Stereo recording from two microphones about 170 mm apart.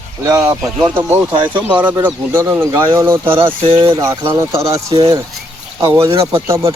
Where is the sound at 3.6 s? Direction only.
35° right (ahead or behind).